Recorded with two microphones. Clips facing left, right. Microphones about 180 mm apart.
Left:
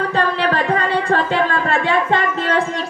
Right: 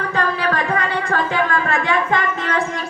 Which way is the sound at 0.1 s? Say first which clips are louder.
Left 2 dB; 30° left (ahead or behind).